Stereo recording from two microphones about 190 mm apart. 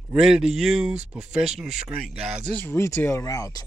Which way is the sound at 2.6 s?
15° left (ahead or behind).